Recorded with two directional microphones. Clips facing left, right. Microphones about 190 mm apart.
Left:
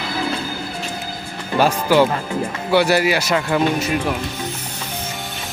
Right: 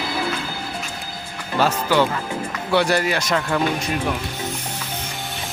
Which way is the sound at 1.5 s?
10° left (ahead or behind).